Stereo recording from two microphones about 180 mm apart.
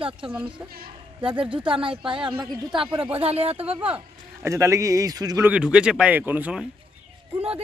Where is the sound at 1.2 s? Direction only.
30° right (ahead or behind).